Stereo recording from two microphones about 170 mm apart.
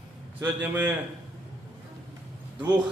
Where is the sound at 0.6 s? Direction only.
10° right (ahead or behind).